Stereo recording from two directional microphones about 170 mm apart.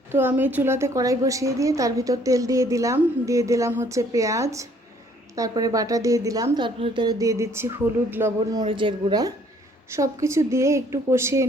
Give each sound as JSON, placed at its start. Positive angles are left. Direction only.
{"t": 0.1, "sound": "a woman's voice", "side_deg": -10}
{"t": 8.6, "sound": "a woman's voice", "side_deg": -30}